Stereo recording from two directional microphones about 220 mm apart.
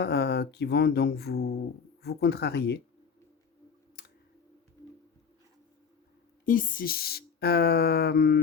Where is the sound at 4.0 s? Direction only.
45° left (ahead or behind).